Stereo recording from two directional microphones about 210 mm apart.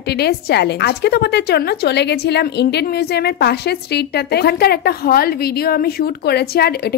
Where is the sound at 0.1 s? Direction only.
50° left (ahead or behind).